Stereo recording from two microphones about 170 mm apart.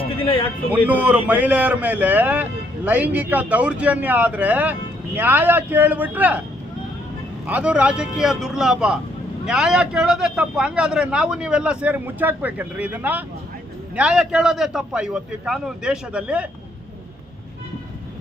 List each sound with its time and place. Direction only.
0.0 s a sound: 30° left (ahead or behind)
0.7 s a man's voice: 10° right (ahead or behind)
7.4 s a man's voice: 10° right (ahead or behind)